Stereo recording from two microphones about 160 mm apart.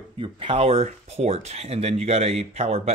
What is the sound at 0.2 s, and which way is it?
Speech, 35° right (ahead or behind).